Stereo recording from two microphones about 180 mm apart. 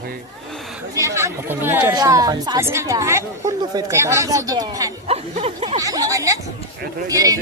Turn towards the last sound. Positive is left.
turn(degrees=-20)  # may be behind; listen again after turning